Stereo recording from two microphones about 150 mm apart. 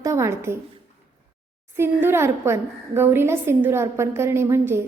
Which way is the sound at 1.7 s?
15° right (ahead or behind).